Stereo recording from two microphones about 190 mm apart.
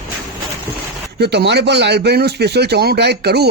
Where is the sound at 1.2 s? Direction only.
60° right (ahead or behind).